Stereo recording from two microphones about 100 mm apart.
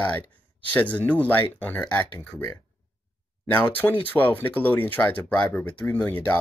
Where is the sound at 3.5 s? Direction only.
20° left (ahead or behind).